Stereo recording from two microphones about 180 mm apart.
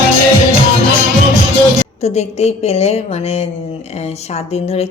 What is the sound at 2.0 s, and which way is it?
A woman's voice, 35° left (ahead or behind).